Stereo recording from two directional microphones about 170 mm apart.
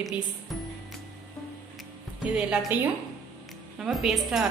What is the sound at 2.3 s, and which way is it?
Speech, 5° right (ahead or behind).